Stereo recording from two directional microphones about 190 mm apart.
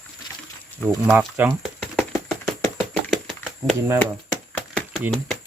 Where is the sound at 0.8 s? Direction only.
10° right (ahead or behind).